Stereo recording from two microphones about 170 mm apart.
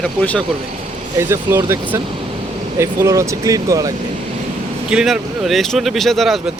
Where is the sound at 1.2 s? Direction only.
15° right (ahead or behind).